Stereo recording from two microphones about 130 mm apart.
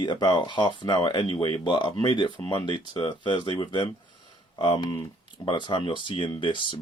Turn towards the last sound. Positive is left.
turn(degrees=40)  # may be behind; listen again after turning